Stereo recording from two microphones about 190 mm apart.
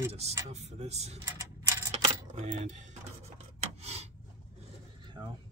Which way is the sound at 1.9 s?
35° right (ahead or behind).